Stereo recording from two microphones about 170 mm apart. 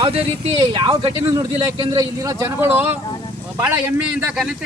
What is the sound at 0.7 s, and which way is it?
Speech, 30° right (ahead or behind).